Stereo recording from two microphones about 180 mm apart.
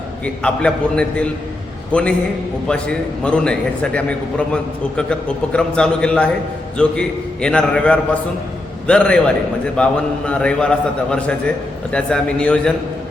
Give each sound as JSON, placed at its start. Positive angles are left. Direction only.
{"t": 0.4, "sound": "a man's voice", "side_deg": 5}
{"t": 5.5, "sound": "a man's voice", "side_deg": 5}